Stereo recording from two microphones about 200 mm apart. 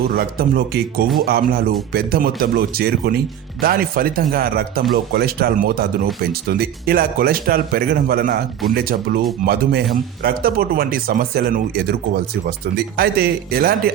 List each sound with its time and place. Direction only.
0.1 s speech: 50° right (ahead or behind)